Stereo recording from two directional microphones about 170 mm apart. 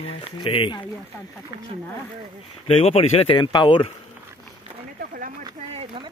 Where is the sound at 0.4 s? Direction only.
30° left (ahead or behind).